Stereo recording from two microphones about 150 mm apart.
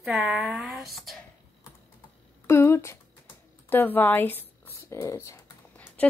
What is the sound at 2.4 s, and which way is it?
Speech, 15° left (ahead or behind).